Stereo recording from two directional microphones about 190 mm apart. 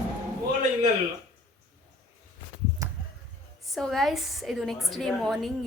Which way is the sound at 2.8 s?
15° right (ahead or behind).